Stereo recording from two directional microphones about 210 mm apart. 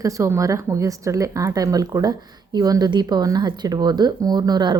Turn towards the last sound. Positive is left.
turn(degrees=-20)  # may be behind; listen again after turning